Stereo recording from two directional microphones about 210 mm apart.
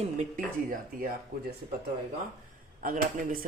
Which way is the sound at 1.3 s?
45° right (ahead or behind).